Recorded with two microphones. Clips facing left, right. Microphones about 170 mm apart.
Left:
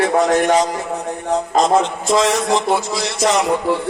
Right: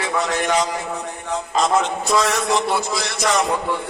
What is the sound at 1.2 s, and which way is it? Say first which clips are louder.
A man's voice: left 5 dB; 35° left (ahead or behind).